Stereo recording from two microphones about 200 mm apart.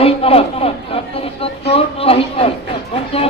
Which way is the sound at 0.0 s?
30° left (ahead or behind).